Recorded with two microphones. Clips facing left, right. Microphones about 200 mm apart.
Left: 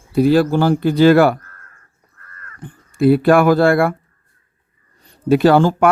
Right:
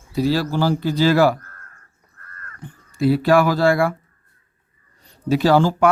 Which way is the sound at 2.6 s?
55° left (ahead or behind).